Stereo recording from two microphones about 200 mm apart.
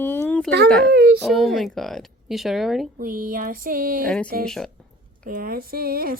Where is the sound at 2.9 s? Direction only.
45° right (ahead or behind).